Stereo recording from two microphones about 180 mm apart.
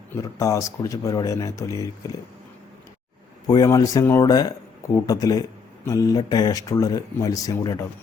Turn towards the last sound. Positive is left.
turn(degrees=20)  # may be behind; listen again after turning